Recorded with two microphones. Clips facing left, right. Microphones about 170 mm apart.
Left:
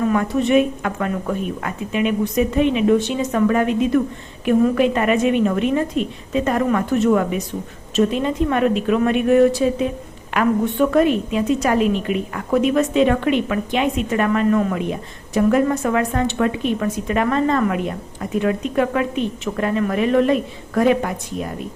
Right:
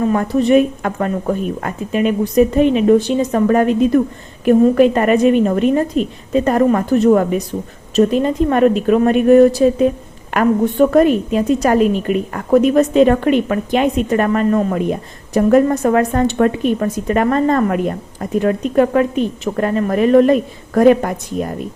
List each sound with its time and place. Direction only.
0.0 s a woman's voice: 35° right (ahead or behind)